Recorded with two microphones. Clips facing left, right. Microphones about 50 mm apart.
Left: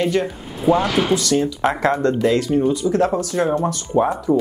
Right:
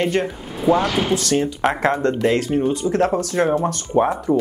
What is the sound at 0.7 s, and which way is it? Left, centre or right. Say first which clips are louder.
Speech: left 1 dB; centre.